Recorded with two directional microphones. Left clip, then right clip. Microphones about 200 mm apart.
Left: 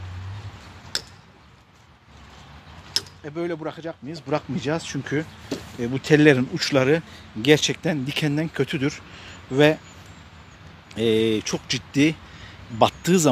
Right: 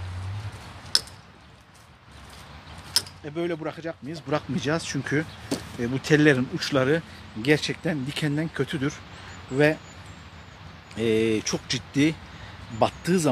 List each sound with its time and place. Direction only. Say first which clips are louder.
3.3 s speech: left 1 dB; 15° left (ahead or behind)
11.0 s speech: left 3 dB; 25° left (ahead or behind)